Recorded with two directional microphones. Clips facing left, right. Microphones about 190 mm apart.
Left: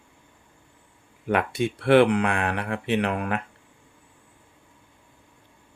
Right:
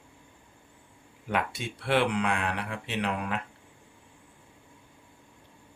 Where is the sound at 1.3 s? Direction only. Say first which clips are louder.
Left 7 dB; 55° left (ahead or behind).